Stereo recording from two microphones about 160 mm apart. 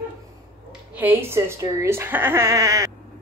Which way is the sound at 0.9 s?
10° right (ahead or behind).